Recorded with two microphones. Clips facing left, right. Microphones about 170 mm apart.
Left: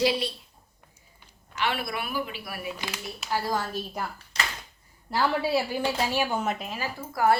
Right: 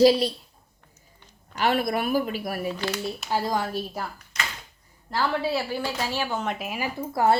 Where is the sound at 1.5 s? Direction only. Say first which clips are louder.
Right 6 dB; 40° right (ahead or behind).